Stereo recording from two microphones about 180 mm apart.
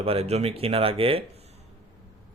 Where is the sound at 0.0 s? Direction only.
35° right (ahead or behind).